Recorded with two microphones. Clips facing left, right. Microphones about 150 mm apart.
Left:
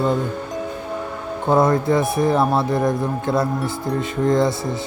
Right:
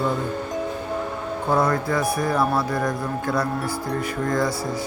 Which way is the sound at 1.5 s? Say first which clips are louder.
Left 5 dB; 25° left (ahead or behind).